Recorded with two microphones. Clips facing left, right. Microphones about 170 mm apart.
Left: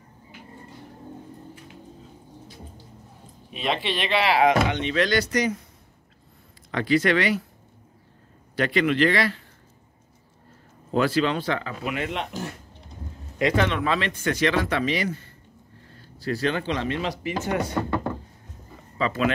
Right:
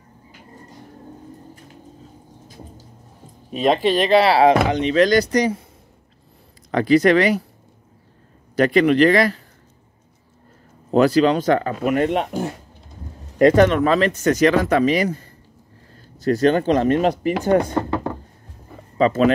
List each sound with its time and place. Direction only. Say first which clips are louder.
3.4 s speech: right 10 dB; 40° right (ahead or behind)
6.7 s speech: right 7 dB; 40° right (ahead or behind)
8.5 s speech: right 7 dB; 40° right (ahead or behind)
10.9 s speech: right 7 dB; 40° right (ahead or behind)
18.9 s speech: right 8 dB; 40° right (ahead or behind)